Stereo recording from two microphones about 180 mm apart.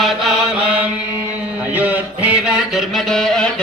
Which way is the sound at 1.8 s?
10° right (ahead or behind).